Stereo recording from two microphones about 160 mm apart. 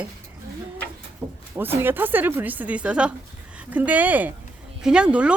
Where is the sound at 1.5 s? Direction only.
15° right (ahead or behind).